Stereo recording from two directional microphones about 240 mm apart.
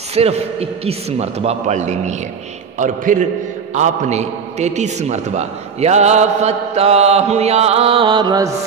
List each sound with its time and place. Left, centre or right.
0.1 s a man's voice: right